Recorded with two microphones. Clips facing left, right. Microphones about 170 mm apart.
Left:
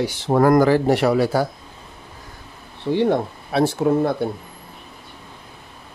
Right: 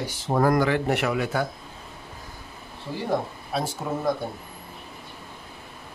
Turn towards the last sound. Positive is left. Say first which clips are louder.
# left 8 dB
turn(degrees=75)  # may be behind; listen again after turning